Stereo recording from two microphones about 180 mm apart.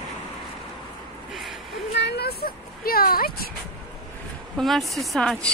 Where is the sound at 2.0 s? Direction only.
70° left (ahead or behind).